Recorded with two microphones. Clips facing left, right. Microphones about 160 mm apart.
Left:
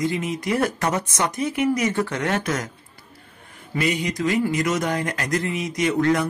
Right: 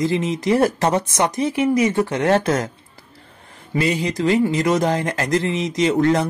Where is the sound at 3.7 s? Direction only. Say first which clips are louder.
Right 3 dB; 30° right (ahead or behind).